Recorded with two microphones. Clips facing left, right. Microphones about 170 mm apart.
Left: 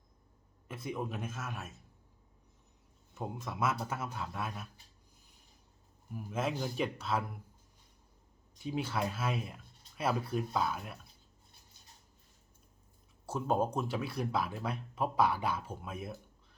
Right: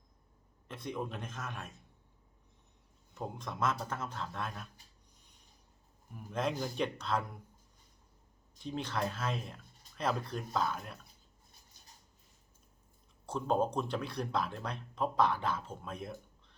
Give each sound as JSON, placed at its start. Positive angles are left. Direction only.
{"t": 0.7, "sound": "a man's voice", "side_deg": 5}
{"t": 3.2, "sound": "speech", "side_deg": 5}
{"t": 6.1, "sound": "a man's voice", "side_deg": 5}
{"t": 8.5, "sound": "speech", "side_deg": 10}
{"t": 13.2, "sound": "speech", "side_deg": 10}